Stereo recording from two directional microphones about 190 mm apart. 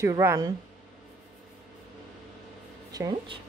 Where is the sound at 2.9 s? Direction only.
20° right (ahead or behind).